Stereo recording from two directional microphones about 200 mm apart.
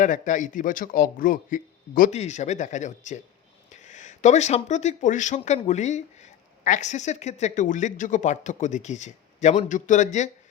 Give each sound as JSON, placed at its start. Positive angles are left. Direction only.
{"t": 0.0, "sound": "speech", "side_deg": 40}